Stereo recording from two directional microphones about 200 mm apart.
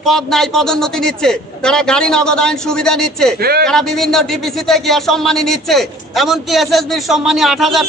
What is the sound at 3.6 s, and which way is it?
A man's voice, centre (ahead or behind).